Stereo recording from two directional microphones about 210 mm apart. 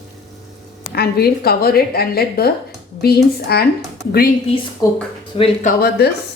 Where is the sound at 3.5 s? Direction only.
50° left (ahead or behind).